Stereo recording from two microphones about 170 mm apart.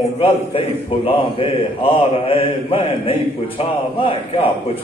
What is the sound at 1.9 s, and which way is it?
A man's voice, 35° left (ahead or behind).